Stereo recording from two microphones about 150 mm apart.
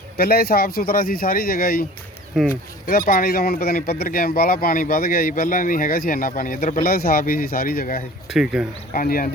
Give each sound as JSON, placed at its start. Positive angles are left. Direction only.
{"t": 0.2, "sound": "speech", "side_deg": 90}
{"t": 2.8, "sound": "speech", "side_deg": 60}
{"t": 8.3, "sound": "speech", "side_deg": -5}
{"t": 8.9, "sound": "speech", "side_deg": 70}